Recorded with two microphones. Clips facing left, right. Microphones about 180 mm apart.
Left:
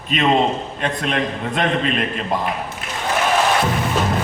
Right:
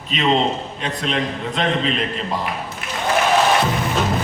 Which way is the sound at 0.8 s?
55° left (ahead or behind).